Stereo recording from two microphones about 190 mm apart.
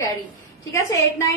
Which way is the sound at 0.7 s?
15° left (ahead or behind).